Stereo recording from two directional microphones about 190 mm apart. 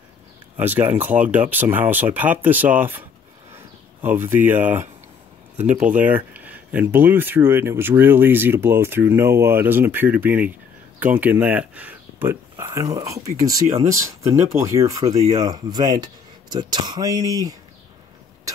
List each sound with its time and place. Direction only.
0.6 s speech: 10° right (ahead or behind)